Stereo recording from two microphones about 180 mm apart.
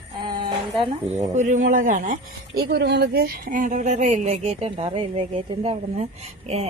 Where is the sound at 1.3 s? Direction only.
40° right (ahead or behind).